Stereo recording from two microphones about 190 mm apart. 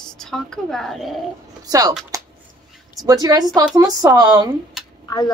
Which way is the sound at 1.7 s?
20° right (ahead or behind).